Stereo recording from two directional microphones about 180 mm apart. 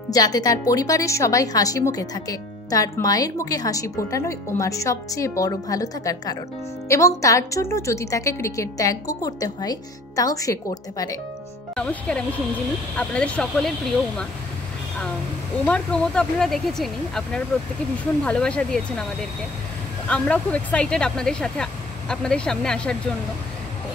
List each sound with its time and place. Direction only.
0.1 s a woman's voice: 20° left (ahead or behind)
11.7 s speech: 5° left (ahead or behind)
15.6 s speech: 5° left (ahead or behind)
20.1 s speech: 5° left (ahead or behind)